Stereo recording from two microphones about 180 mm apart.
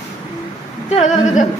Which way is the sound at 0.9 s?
40° left (ahead or behind).